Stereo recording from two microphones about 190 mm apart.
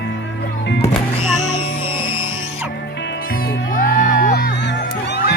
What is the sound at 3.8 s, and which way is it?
Music, 45° left (ahead or behind).